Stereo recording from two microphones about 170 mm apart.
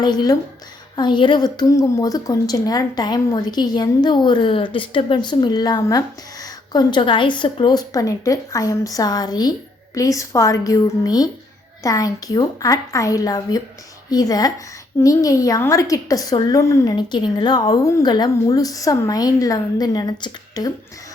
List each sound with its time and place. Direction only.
0.0 s a woman's voice: 25° left (ahead or behind)